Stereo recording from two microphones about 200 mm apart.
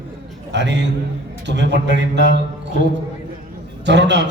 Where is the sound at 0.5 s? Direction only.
60° right (ahead or behind).